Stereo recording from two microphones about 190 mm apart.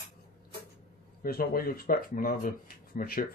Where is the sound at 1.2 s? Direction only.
50° left (ahead or behind).